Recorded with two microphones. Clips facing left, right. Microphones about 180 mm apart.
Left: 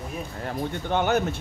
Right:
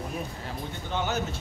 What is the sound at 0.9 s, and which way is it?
Speech, 60° left (ahead or behind).